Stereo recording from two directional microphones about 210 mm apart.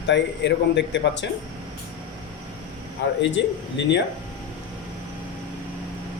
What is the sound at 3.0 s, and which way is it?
Speech, 55° left (ahead or behind).